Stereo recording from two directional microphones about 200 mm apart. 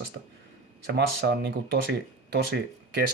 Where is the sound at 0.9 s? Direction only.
55° right (ahead or behind).